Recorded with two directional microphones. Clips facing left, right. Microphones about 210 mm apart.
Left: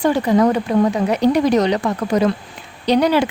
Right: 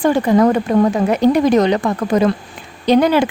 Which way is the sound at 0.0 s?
50° right (ahead or behind).